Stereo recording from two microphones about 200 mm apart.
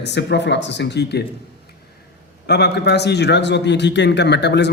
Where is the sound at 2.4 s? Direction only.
55° left (ahead or behind).